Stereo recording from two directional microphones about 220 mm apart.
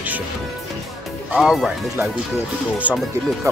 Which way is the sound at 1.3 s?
5° right (ahead or behind).